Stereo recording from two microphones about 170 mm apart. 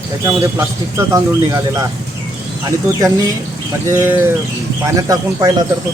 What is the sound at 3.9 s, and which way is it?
A man's voice, 15° right (ahead or behind).